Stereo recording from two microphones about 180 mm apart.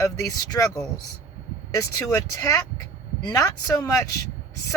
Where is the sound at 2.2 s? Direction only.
20° left (ahead or behind).